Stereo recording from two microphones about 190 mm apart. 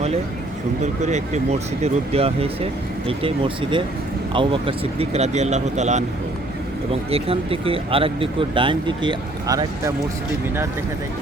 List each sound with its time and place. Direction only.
0.8 s speech: 40° right (ahead or behind)
7.1 s speech: 30° right (ahead or behind)